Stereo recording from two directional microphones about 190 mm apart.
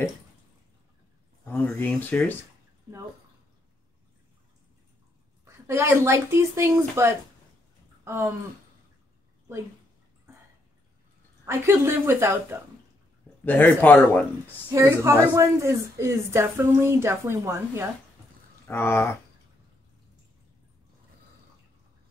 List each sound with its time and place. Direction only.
1.4 s speech: 10° left (ahead or behind)
5.4 s a woman's voice: 15° right (ahead or behind)
8.0 s a sound: 10° right (ahead or behind)
11.4 s a woman's voice: 15° right (ahead or behind)
13.5 s speech: 10° left (ahead or behind)
14.7 s a woman's voice: 15° right (ahead or behind)
18.7 s speech: 10° left (ahead or behind)